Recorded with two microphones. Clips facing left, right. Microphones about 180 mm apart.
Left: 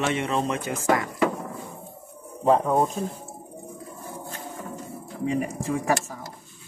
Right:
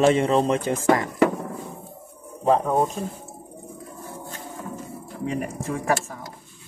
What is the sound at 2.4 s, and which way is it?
Speech, centre (ahead or behind).